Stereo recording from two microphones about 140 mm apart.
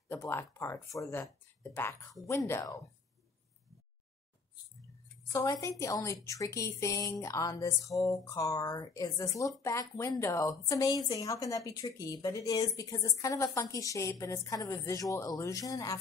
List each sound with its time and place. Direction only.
0.1 s a woman's voice: 15° left (ahead or behind)
5.3 s a woman's voice: 20° left (ahead or behind)